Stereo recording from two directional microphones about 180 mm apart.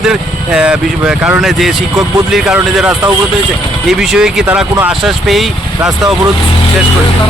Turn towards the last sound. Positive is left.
turn(degrees=0)  # may be behind; listen again after turning